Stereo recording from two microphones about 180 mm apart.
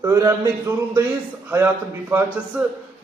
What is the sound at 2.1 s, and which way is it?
Speech, 10° right (ahead or behind).